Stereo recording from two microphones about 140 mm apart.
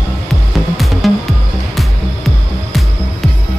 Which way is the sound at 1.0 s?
Centre (ahead or behind).